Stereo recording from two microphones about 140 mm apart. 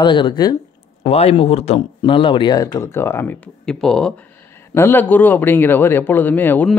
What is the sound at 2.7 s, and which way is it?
Speech, 20° left (ahead or behind).